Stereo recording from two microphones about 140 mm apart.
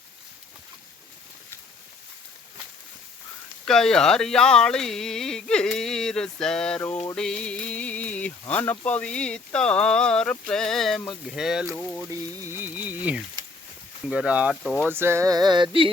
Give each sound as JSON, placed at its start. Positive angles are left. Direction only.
{"t": 3.7, "sound": "speech", "side_deg": 5}
{"t": 12.4, "sound": "speech", "side_deg": -15}
{"t": 14.6, "sound": "speech", "side_deg": 0}
{"t": 14.8, "sound": "a sound", "side_deg": -15}